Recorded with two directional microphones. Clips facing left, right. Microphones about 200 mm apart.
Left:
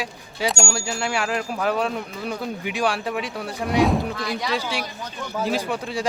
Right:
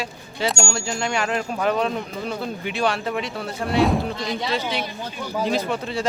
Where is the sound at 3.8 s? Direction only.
Centre (ahead or behind).